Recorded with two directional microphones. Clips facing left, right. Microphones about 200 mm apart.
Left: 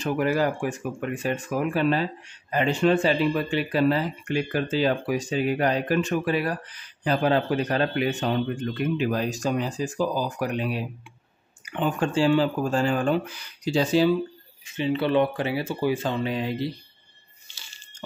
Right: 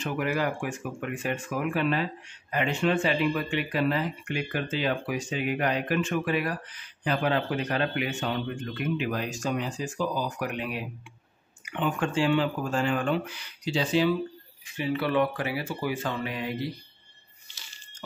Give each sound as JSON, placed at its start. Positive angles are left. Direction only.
{"t": 0.0, "sound": "speech", "side_deg": 35}
{"t": 14.8, "sound": "speech", "side_deg": 25}